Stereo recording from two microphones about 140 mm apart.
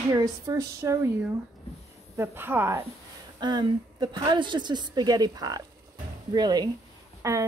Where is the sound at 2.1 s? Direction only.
15° right (ahead or behind).